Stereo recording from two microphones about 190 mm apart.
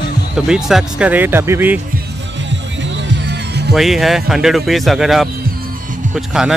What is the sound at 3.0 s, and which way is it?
Music, 65° right (ahead or behind).